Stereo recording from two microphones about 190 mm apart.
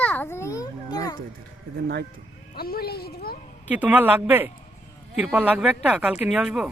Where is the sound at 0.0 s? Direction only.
10° left (ahead or behind).